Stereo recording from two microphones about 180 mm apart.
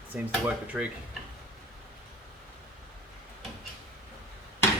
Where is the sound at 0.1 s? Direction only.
10° right (ahead or behind).